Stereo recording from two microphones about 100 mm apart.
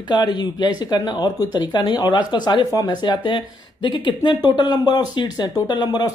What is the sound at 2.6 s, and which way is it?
Speech, 40° left (ahead or behind).